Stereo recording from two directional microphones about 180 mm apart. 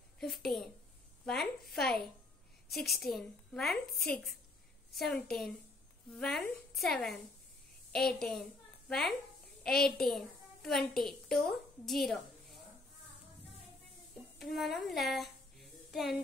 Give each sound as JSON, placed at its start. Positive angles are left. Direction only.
{"t": 0.2, "sound": "a woman's voice", "side_deg": 0}
{"t": 14.4, "sound": "a woman's voice", "side_deg": 0}